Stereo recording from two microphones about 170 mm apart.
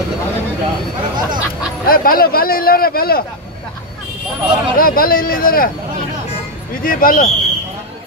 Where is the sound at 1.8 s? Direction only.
60° left (ahead or behind).